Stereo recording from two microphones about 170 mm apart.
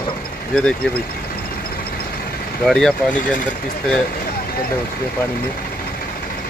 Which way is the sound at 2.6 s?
Centre (ahead or behind).